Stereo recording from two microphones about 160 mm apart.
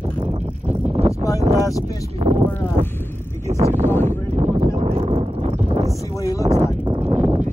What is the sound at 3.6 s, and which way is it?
Speech, 45° right (ahead or behind).